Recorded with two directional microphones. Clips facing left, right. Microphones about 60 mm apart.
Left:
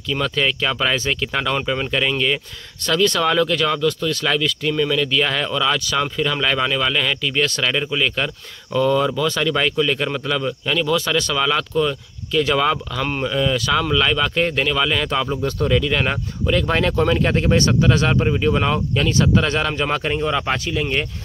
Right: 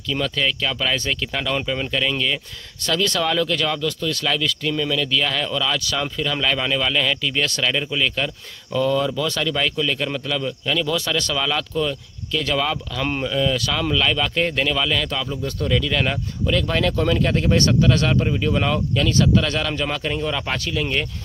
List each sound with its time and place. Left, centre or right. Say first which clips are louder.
0.1 s speech: left 2 dB; centre
2.8 s speech: left 3 dB; centre
13.0 s speech: right 1 dB; centre
13.3 s speech: left 4 dB; centre
15.0 s speech: left 4 dB; left
15.2 s speech: left 4 dB; left
15.9 s speech: left 2 dB; left
20.2 s speech: left 4 dB; centre